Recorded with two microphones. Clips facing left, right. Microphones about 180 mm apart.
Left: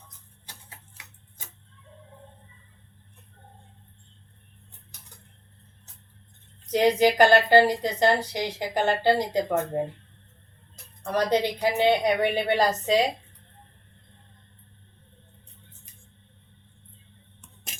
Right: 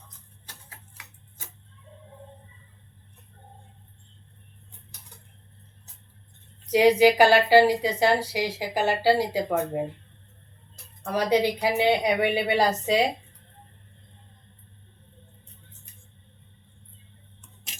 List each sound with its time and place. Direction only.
6.7 s a woman's voice: 10° right (ahead or behind)
11.0 s a woman's voice: 10° right (ahead or behind)
17.7 s a sound: 50° left (ahead or behind)